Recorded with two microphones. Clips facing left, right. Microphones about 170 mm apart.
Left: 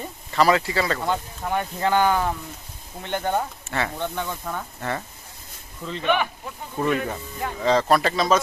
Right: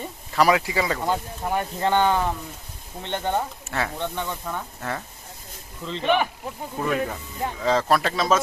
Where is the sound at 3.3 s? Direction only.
Centre (ahead or behind).